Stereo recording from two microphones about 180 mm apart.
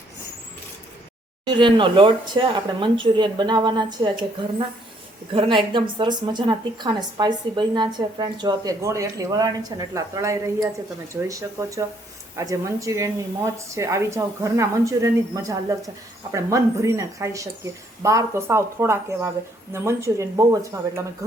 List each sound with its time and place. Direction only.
1.5 s a woman's voice: 25° right (ahead or behind)
5.3 s a woman's voice: 30° right (ahead or behind)